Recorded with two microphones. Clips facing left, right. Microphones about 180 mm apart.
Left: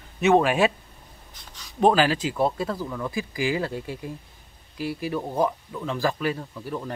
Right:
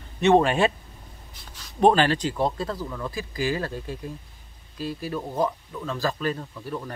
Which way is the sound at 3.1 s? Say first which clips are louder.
Left 1 dB; 15° left (ahead or behind).